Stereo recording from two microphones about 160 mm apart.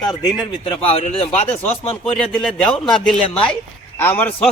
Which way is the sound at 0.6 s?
35° left (ahead or behind).